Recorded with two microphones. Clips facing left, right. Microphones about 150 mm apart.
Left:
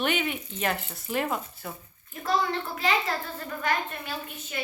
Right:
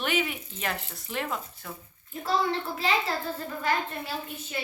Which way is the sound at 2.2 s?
30° right (ahead or behind).